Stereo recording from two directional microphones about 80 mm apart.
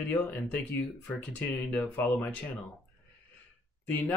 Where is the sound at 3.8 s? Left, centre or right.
Left.